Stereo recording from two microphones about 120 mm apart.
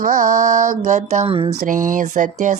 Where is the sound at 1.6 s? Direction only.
90° right.